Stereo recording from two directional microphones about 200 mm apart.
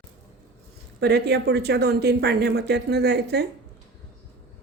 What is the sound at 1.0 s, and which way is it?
Speech, 55° right (ahead or behind).